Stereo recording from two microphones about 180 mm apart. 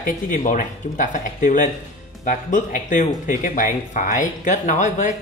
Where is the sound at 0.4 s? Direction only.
45° left (ahead or behind).